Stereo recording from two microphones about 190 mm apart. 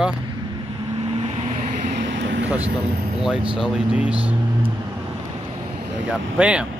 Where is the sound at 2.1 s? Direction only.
70° right (ahead or behind).